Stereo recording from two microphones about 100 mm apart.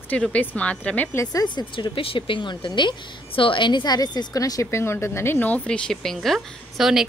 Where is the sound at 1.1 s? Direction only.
35° left (ahead or behind).